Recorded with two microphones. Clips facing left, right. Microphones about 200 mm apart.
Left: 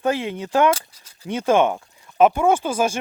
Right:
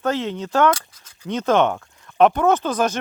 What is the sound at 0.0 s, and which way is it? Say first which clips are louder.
Speech: even; 10° left (ahead or behind).